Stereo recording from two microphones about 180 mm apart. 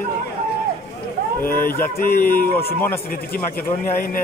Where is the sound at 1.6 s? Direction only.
50° left (ahead or behind).